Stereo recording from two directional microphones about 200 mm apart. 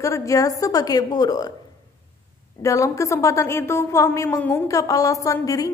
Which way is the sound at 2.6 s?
15° left (ahead or behind).